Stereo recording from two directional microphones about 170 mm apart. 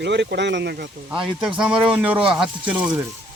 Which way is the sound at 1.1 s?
5° right (ahead or behind).